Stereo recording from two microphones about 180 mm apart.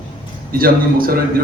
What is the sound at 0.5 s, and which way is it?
Speech, 55° right (ahead or behind).